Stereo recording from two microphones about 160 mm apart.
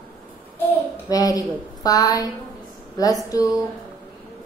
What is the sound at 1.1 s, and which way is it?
Speech, 20° left (ahead or behind).